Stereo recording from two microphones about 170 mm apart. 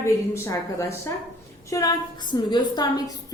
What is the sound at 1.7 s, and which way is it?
A woman's voice, 20° left (ahead or behind).